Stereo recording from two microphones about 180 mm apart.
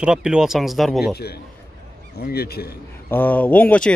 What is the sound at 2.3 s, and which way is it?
Speech, 60° left (ahead or behind).